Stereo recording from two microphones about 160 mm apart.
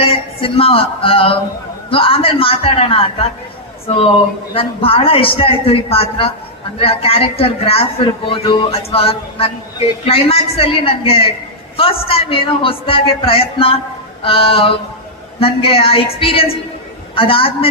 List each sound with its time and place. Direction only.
0.0 s a man's voice: 35° left (ahead or behind)